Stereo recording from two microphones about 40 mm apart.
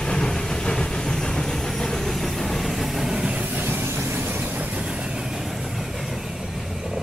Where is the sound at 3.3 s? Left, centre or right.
Right.